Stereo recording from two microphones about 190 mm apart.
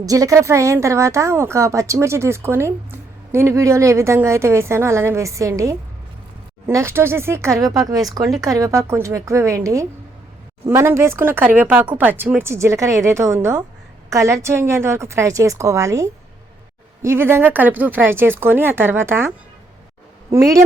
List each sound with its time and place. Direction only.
0.0 s speech: 20° right (ahead or behind)